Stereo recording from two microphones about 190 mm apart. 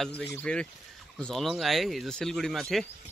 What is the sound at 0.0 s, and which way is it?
Speech, 5° left (ahead or behind).